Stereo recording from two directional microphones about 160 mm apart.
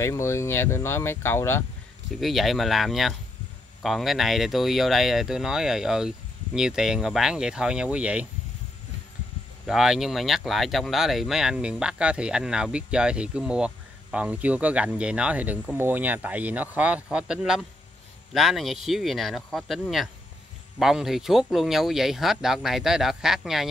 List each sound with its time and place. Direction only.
0.0 s speech: 15° left (ahead or behind)
2.1 s speech: centre (ahead or behind)
9.7 s speech: 5° right (ahead or behind)